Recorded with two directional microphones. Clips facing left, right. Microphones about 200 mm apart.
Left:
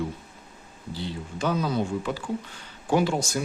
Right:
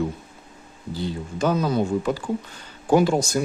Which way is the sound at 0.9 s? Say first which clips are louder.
Right 5 dB; 45° right (ahead or behind).